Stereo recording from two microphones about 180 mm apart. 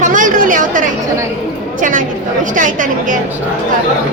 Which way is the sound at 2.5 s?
45° right (ahead or behind).